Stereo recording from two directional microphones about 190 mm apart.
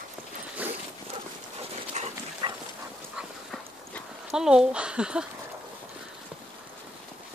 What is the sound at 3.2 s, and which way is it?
Dog, centre (ahead or behind).